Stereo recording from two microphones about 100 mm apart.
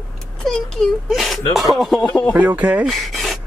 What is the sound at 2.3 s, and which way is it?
Speech, 15° right (ahead or behind).